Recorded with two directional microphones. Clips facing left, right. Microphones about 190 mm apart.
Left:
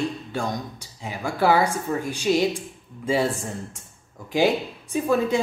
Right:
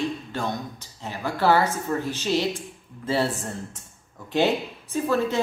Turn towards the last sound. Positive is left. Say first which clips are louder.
# left 2 dB
turn(degrees=10)  # may be behind; listen again after turning